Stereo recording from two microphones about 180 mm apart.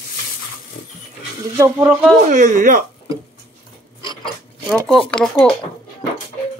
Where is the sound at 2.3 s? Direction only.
50° right (ahead or behind).